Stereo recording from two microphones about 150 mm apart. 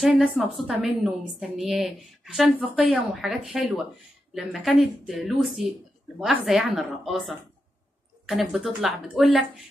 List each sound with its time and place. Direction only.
0.0 s a woman's voice: 5° right (ahead or behind)